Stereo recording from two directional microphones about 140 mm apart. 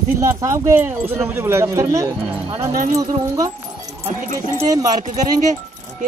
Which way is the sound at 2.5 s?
45° right (ahead or behind).